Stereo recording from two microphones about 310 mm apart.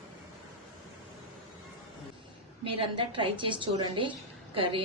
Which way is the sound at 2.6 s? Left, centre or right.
Centre.